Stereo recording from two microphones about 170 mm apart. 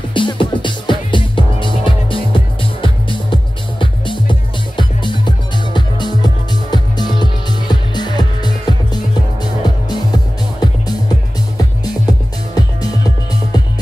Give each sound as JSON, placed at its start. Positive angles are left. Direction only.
{"t": 0.1, "sound": "music", "side_deg": 30}